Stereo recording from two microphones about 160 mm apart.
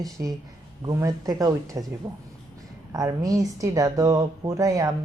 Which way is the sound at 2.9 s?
20° right (ahead or behind).